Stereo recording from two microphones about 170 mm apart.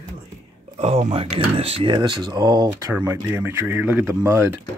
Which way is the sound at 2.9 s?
15° right (ahead or behind).